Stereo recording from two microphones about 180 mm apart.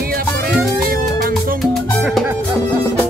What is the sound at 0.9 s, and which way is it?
Music, 55° right (ahead or behind).